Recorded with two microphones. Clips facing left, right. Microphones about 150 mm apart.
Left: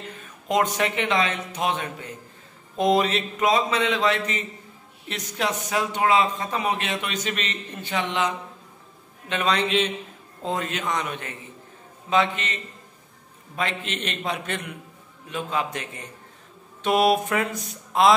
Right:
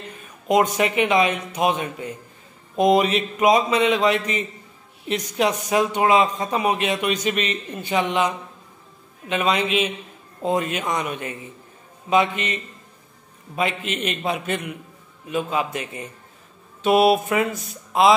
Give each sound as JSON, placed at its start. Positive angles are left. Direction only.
{"t": 0.5, "sound": "speech", "side_deg": -10}
{"t": 9.3, "sound": "speech", "side_deg": -10}
{"t": 13.6, "sound": "speech", "side_deg": -10}
{"t": 16.8, "sound": "mantra", "side_deg": -5}